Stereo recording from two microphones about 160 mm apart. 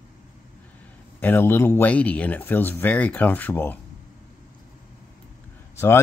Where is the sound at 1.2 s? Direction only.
10° left (ahead or behind).